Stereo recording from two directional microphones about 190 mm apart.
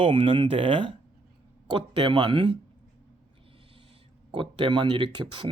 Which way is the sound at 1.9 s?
25° right (ahead or behind).